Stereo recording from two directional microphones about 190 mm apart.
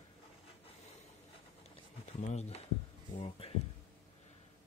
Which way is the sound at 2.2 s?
35° left (ahead or behind).